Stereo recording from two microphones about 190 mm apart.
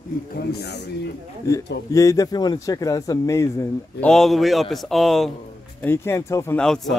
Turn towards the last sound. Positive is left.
turn(degrees=0)  # may be behind; listen again after turning